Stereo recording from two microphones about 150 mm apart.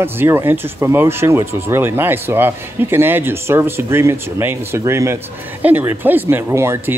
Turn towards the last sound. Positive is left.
turn(degrees=-15)  # may be behind; listen again after turning